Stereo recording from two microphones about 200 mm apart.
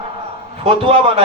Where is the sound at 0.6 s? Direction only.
30° right (ahead or behind).